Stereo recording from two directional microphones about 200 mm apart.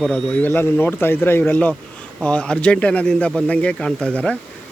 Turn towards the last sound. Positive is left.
turn(degrees=5)  # may be behind; listen again after turning